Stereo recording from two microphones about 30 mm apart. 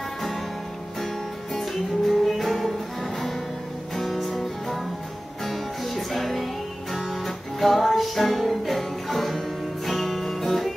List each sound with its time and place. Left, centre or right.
1.5 s music: centre